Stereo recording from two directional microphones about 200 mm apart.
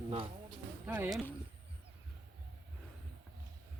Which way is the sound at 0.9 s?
5° right (ahead or behind).